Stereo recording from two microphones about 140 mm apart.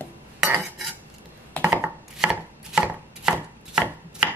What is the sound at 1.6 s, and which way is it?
Chopping, 15° right (ahead or behind).